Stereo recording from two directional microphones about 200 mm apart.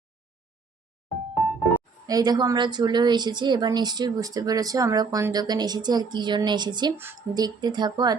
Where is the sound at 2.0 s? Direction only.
20° right (ahead or behind).